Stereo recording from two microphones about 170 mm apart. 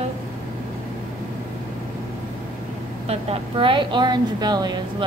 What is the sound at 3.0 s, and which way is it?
A woman's voice, 35° right (ahead or behind).